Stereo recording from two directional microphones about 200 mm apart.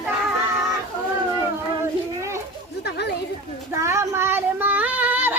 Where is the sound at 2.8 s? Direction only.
55° left (ahead or behind).